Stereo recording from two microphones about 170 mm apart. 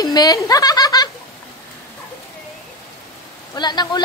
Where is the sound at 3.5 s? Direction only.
25° left (ahead or behind).